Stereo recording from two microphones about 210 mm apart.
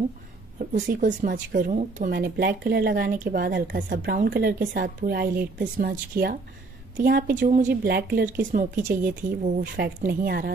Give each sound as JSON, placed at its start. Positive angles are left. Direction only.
{"t": 0.8, "sound": "speech", "side_deg": -40}